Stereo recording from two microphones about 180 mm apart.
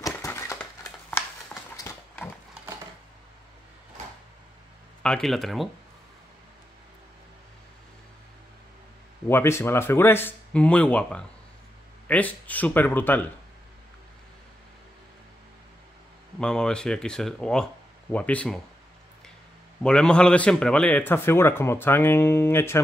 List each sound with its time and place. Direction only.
0.0 s a sound: 15° left (ahead or behind)
1.8 s horse: 15° left (ahead or behind)
5.0 s speech: 5° left (ahead or behind)
9.3 s a man's voice: 15° left (ahead or behind)
16.3 s a man's voice: 5° left (ahead or behind)
19.8 s a man's voice: 5° left (ahead or behind)